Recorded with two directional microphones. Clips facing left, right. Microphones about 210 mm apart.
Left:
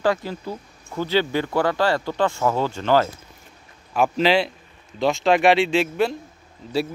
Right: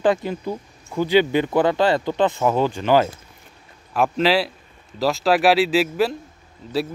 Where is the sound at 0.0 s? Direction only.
20° right (ahead or behind).